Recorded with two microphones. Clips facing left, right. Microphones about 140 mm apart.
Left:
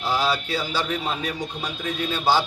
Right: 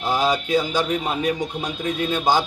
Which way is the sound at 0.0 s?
20° right (ahead or behind).